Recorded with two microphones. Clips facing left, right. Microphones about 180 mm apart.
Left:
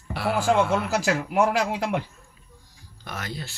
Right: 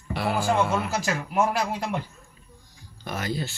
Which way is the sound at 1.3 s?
70° left (ahead or behind).